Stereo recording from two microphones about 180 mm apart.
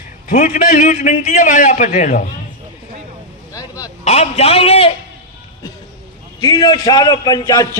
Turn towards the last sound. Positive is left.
turn(degrees=20)  # may be behind; listen again after turning